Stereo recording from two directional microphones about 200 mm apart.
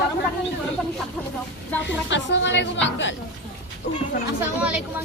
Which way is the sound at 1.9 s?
65° left (ahead or behind).